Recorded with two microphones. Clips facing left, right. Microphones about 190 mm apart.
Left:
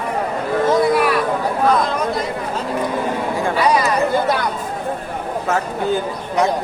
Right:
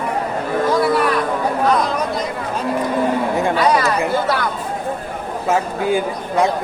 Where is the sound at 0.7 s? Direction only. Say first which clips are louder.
Even; 10° left (ahead or behind).